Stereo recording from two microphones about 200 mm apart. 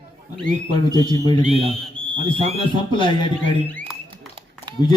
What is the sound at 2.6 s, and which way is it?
Speech, 25° left (ahead or behind).